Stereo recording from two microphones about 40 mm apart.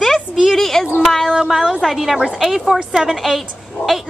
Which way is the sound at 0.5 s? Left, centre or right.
Centre.